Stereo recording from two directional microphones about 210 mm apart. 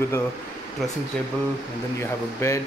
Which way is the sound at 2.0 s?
10° left (ahead or behind).